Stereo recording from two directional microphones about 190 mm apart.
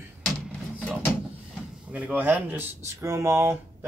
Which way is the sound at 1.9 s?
10° right (ahead or behind).